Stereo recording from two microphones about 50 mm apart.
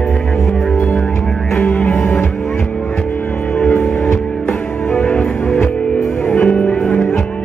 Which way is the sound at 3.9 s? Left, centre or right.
Left.